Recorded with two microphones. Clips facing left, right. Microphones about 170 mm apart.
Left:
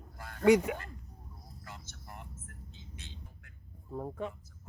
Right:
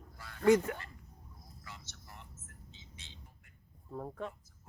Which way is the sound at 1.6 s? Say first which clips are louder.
Left 3 dB; 50° left (ahead or behind).